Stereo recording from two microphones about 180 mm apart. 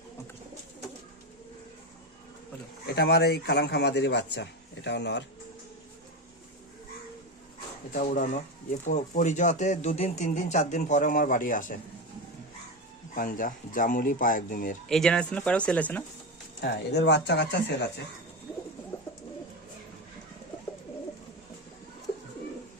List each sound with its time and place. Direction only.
2.8 s a man's voice: 60° left (ahead or behind)
8.1 s speech: 45° left (ahead or behind)
13.1 s speech: 50° left (ahead or behind)
14.8 s speech: 5° left (ahead or behind)
16.6 s a man's voice: 70° left (ahead or behind)